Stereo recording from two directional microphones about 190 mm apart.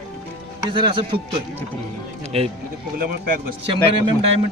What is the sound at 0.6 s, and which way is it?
Speech, 25° right (ahead or behind).